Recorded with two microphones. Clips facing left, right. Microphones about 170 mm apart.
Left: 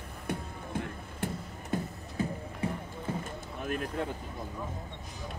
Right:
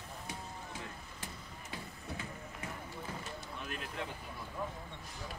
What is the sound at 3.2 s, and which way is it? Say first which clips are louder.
Vehicle: left 6 dB; 50° left (ahead or behind).